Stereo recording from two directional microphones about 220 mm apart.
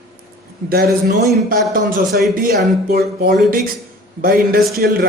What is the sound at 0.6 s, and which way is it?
A man's voice, 45° right (ahead or behind).